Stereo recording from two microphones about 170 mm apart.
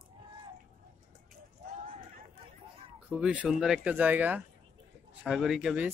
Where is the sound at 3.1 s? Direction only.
5° right (ahead or behind).